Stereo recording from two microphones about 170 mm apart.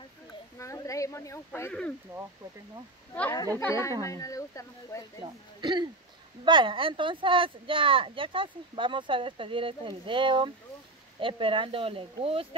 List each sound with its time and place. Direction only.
0.6 s a sound: 20° left (ahead or behind)
1.7 s speech: 5° left (ahead or behind)
3.5 s speech: 15° left (ahead or behind)
5.2 s speech: 25° right (ahead or behind)